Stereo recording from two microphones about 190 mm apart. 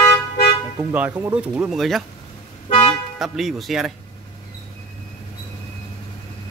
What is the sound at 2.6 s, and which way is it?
Car, 30° left (ahead or behind).